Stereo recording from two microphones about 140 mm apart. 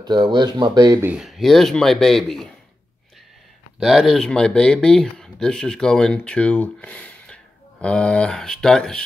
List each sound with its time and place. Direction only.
0.0 s speech: 30° right (ahead or behind)
1.1 s speech: centre (ahead or behind)
3.8 s speech: centre (ahead or behind)